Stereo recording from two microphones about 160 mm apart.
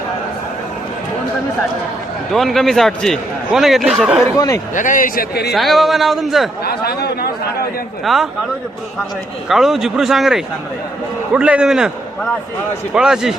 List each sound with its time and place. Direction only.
2.3 s a man's voice: centre (ahead or behind)
4.4 s speech: 25° left (ahead or behind)
4.7 s a man's voice: 55° left (ahead or behind); by 5.5 s 85° left
5.5 s a man's voice: centre (ahead or behind)
6.6 s chatter: 80° left
8.0 s a man's voice: centre (ahead or behind)
9.5 s a man's voice: centre (ahead or behind)